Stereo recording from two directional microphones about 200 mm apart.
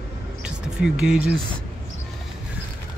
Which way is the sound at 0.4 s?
5° right (ahead or behind).